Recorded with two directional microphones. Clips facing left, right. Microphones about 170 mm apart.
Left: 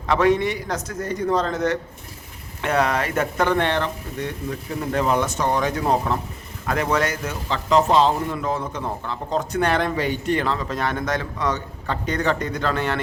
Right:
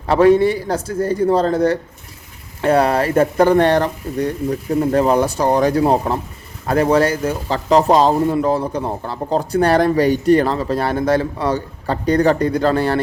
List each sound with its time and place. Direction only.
0.1 s a man's voice: 30° right (ahead or behind)